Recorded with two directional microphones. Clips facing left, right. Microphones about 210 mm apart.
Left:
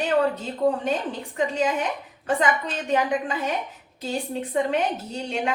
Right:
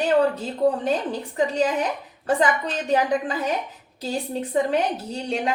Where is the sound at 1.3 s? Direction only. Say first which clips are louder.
Right 2 dB; 35° right (ahead or behind).